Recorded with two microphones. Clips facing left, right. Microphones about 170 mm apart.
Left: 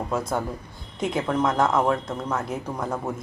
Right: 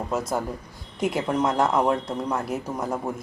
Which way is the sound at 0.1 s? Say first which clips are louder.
Right 1 dB; 5° right (ahead or behind).